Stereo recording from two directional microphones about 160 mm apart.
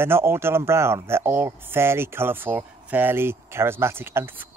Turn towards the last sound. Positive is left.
turn(degrees=-15)  # may be behind; listen again after turning